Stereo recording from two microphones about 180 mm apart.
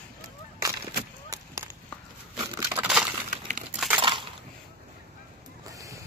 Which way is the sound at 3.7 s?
5° right (ahead or behind).